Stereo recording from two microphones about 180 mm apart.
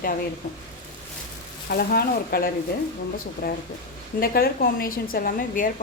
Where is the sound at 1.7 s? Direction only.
55° left (ahead or behind).